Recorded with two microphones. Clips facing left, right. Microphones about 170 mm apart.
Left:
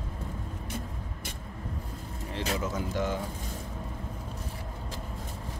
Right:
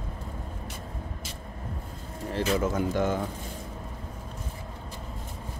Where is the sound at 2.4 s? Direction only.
50° right (ahead or behind).